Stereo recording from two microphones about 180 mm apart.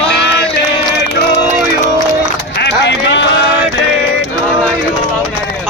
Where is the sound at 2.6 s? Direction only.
75° left (ahead or behind).